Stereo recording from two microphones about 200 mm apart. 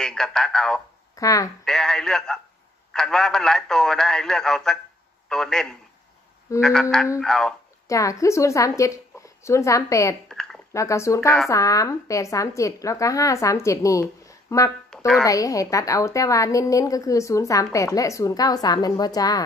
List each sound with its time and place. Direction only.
0.0 s a man's voice: 5° left (ahead or behind)
1.1 s speech: 15° left (ahead or behind)
1.6 s a man's voice: centre (ahead or behind)
7.9 s a woman's voice: 15° left (ahead or behind)
10.2 s a sound: 5° left (ahead or behind)
10.7 s a woman's voice: 15° left (ahead or behind)
14.9 s music: 5° left (ahead or behind)
15.2 s a woman's voice: 15° left (ahead or behind)